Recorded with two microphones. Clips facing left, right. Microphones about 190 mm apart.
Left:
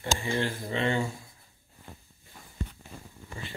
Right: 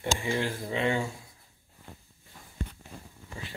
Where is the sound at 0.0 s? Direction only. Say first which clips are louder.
Even; 10° right (ahead or behind).